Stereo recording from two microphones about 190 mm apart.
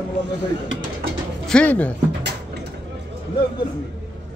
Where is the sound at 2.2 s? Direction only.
65° right (ahead or behind).